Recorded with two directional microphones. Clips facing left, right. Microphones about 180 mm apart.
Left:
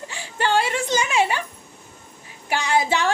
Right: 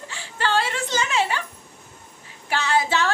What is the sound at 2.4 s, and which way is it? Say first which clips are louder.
Speech: left 1 dB; 15° left (ahead or behind).